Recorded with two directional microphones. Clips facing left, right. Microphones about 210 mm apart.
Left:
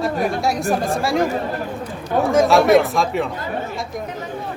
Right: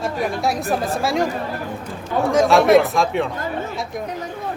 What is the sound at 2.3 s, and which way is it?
Speech, centre (ahead or behind).